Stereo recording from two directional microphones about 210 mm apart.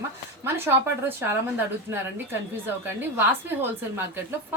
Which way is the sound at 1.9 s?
10° right (ahead or behind).